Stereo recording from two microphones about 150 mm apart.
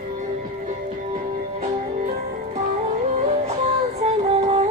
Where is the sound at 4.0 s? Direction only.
45° right (ahead or behind).